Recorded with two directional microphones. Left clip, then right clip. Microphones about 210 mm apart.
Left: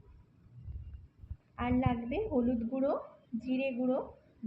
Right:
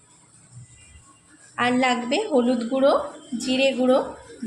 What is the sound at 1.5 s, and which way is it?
Speech, 10° right (ahead or behind).